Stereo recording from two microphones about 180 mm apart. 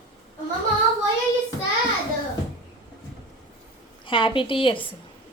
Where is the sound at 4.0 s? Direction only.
30° left (ahead or behind).